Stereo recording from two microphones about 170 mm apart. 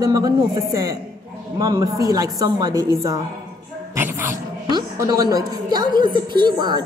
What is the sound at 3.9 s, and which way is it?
A woman's voice, 15° right (ahead or behind).